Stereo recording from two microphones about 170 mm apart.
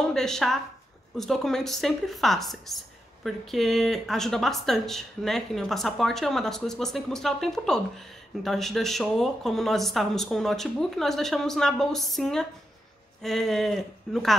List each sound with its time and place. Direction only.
0.0 s speech: 5° left (ahead or behind)